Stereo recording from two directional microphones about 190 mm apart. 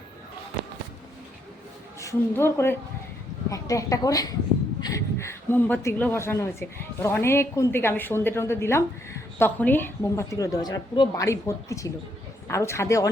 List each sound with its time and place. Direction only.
2.0 s a woman's voice: 15° left (ahead or behind)